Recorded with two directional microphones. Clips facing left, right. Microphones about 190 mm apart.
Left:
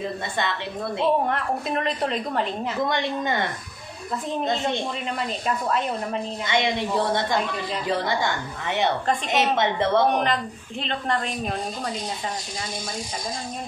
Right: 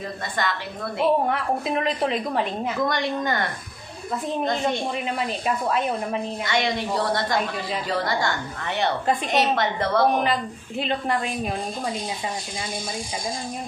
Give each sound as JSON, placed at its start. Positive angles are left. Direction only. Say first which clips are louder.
{"t": 0.4, "sound": "a woman's voice", "louder": "right 1 dB", "side_deg": 25}
{"t": 1.2, "sound": "a woman's voice", "louder": "right 1 dB", "side_deg": -5}
{"t": 2.9, "sound": "a woman's voice", "louder": "even", "side_deg": 25}
{"t": 5.2, "sound": "a woman's voice", "louder": "even", "side_deg": -5}
{"t": 6.4, "sound": "a woman's voice", "louder": "left 2 dB", "side_deg": 20}
{"t": 10.1, "sound": "a woman's voice", "louder": "right 1 dB", "side_deg": -5}